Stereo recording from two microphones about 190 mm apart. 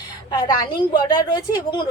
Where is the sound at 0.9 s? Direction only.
20° left (ahead or behind).